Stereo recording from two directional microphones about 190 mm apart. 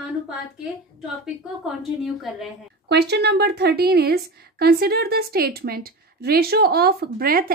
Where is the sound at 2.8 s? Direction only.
60° right (ahead or behind).